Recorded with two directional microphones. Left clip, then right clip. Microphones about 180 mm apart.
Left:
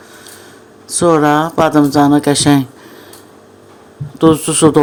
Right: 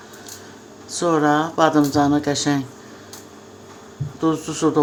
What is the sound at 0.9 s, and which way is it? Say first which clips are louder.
Speech: left 7 dB; 40° left (ahead or behind).